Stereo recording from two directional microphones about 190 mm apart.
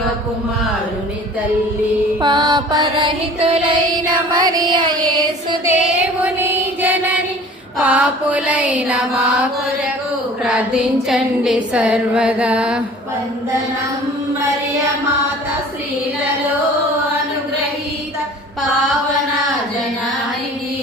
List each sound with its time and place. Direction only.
2.2 s mantra: 25° right (ahead or behind)
6.2 s mantra: 10° right (ahead or behind)
10.4 s a sound: 5° right (ahead or behind)